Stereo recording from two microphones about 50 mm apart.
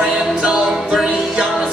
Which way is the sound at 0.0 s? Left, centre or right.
Centre.